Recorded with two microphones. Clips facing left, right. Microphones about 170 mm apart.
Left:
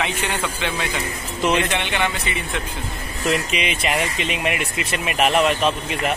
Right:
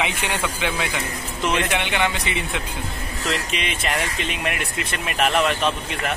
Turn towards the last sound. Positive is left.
turn(degrees=5)  # may be behind; listen again after turning